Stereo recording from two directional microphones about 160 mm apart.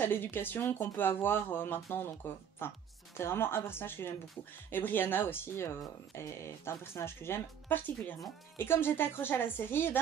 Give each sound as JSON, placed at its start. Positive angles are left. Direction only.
{"t": 0.0, "sound": "speech", "side_deg": 15}